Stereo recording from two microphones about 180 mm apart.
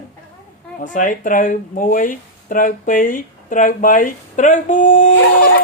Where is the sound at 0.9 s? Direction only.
45° left (ahead or behind).